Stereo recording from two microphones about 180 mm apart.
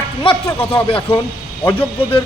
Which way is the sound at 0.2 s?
30° left (ahead or behind).